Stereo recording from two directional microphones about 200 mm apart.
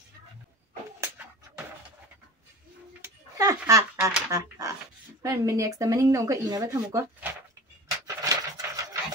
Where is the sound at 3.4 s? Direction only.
15° right (ahead or behind).